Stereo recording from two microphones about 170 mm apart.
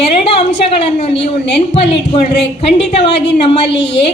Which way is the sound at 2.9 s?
90° left.